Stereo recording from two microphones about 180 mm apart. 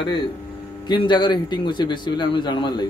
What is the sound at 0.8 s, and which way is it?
A man's voice, 25° left (ahead or behind).